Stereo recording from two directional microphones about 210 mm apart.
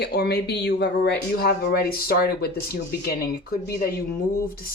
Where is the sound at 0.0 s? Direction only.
50° left (ahead or behind).